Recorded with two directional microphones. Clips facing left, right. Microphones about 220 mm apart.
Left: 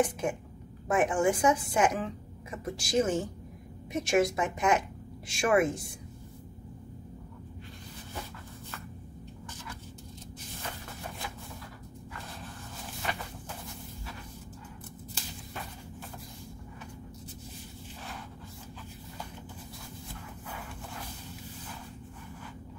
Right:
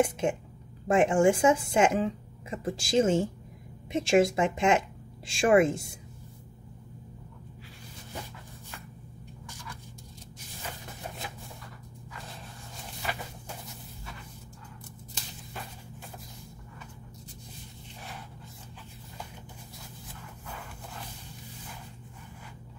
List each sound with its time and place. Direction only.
0.0 s a woman's voice: 25° right (ahead or behind)